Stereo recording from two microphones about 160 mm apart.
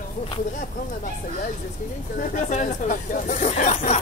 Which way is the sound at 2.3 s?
50° left (ahead or behind).